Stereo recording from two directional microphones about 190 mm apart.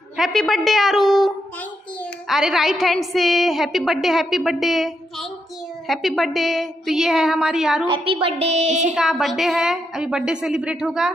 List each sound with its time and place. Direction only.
0.2 s a woman's voice: centre (ahead or behind)
7.9 s a woman's voice: 30° right (ahead or behind)
8.9 s a woman's voice: centre (ahead or behind)